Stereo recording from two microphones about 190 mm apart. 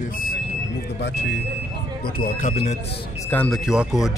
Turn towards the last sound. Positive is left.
turn(degrees=0)  # may be behind; listen again after turning